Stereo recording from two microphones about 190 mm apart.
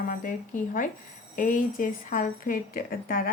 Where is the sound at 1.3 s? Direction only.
45° left (ahead or behind).